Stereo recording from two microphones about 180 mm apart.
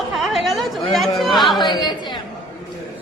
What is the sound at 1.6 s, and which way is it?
Speech, 25° left (ahead or behind).